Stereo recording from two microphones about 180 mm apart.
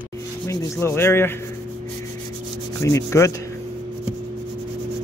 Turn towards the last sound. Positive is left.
turn(degrees=15)  # may be behind; listen again after turning